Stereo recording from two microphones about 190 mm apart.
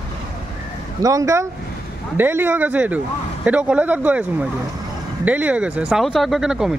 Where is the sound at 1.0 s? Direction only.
15° right (ahead or behind).